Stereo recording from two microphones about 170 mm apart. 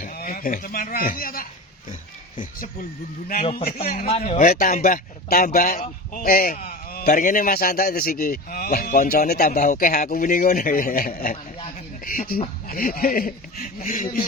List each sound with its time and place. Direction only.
0.0 s a man's voice: 60° left (ahead or behind)